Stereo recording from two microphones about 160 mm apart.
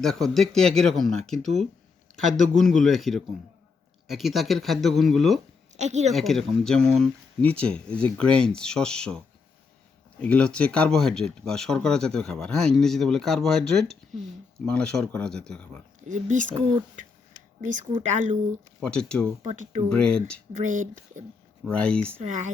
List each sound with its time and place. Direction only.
0.0 s speech: centre (ahead or behind)
2.6 s speech: centre (ahead or behind)
5.7 s a woman's voice: 45° right (ahead or behind)
6.1 s speech: centre (ahead or behind)
16.0 s speech: 50° right (ahead or behind)
18.8 s speech: 5° left (ahead or behind)
19.4 s speech: 50° right (ahead or behind)
19.9 s speech: 5° left (ahead or behind)
20.6 s speech: 50° right (ahead or behind)
21.7 s speech: 5° left (ahead or behind)